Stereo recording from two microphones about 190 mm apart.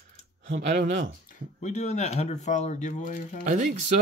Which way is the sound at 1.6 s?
35° left (ahead or behind).